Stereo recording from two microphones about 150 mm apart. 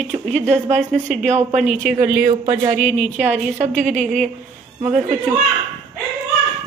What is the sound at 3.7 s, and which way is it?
Speech, 55° right (ahead or behind).